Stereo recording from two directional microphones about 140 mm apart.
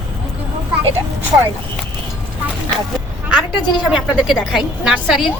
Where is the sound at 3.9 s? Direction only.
10° right (ahead or behind).